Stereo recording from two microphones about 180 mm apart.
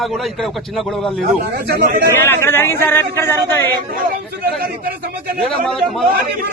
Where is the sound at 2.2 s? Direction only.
10° left (ahead or behind).